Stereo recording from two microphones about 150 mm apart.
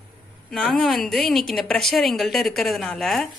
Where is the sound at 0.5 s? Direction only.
5° left (ahead or behind).